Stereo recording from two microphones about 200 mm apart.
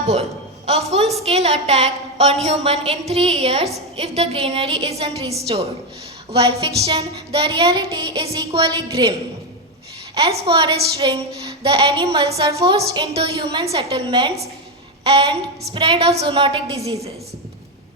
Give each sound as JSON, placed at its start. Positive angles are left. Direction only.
{"t": 0.1, "sound": "a man's voice", "side_deg": -30}
{"t": 10.2, "sound": "a woman's voice", "side_deg": -30}